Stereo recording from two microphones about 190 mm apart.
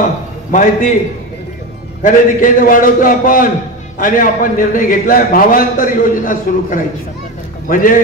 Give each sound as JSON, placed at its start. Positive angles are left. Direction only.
{"t": 0.5, "sound": "a man's voice", "side_deg": 40}
{"t": 2.0, "sound": "a man's voice", "side_deg": 45}